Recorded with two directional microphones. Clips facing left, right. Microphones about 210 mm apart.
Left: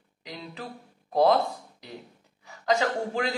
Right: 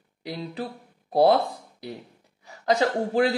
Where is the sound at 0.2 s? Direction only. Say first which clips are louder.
Right 7 dB; 35° right (ahead or behind).